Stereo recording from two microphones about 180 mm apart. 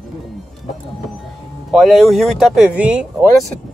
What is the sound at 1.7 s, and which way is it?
Speech, centre (ahead or behind).